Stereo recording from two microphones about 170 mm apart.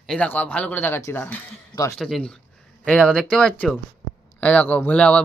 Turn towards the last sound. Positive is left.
turn(degrees=5)  # may be behind; listen again after turning